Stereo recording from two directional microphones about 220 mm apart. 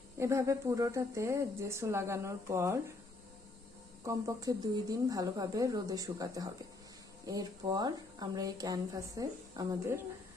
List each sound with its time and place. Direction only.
0.2 s speech: 15° right (ahead or behind)
4.0 s speech: 15° right (ahead or behind)